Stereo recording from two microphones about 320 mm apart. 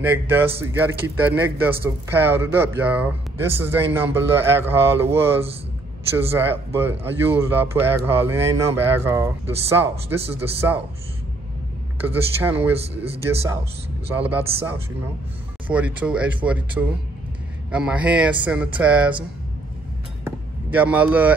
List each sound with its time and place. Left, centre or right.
0.0 s speech: centre
12.0 s speech: centre
14.1 s speech: centre
15.7 s speech: centre
20.2 s a sound: centre